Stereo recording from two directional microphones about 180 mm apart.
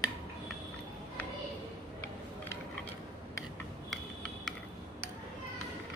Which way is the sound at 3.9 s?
Centre (ahead or behind).